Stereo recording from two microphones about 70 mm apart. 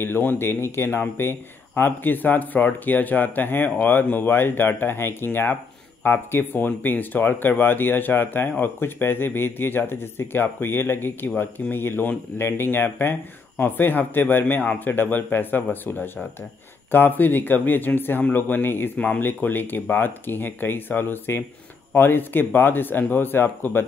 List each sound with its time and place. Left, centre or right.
0.0 s speech: left